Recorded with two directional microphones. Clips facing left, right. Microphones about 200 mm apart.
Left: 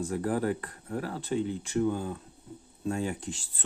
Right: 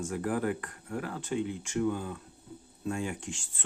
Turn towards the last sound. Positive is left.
turn(degrees=35)  # may be behind; listen again after turning